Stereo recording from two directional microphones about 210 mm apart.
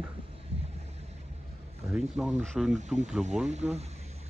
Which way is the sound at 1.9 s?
5° right (ahead or behind).